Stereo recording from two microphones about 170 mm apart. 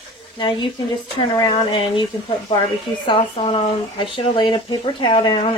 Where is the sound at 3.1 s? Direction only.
35° left (ahead or behind).